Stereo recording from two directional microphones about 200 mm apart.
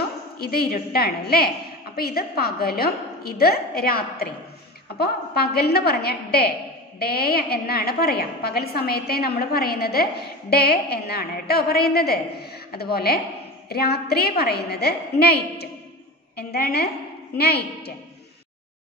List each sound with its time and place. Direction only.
0.4 s a woman's voice: 50° left (ahead or behind)